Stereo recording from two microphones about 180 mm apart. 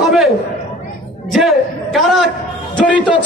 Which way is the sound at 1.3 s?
Centre (ahead or behind).